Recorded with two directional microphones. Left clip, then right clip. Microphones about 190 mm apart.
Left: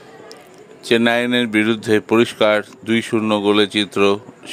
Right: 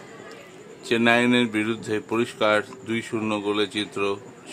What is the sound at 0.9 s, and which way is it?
Speech, 30° left (ahead or behind).